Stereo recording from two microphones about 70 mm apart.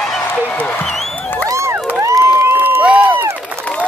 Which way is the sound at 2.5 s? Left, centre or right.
Right.